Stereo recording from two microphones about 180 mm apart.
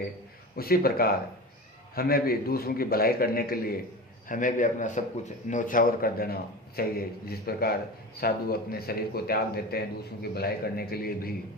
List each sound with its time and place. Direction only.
0.5 s a man's voice: 55° left (ahead or behind)